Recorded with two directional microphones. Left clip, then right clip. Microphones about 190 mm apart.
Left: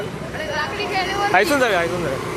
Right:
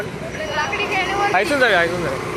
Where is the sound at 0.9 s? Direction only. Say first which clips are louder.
Even; 10° left (ahead or behind).